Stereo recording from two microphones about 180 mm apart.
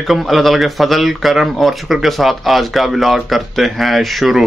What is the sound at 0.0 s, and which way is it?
Speech, centre (ahead or behind).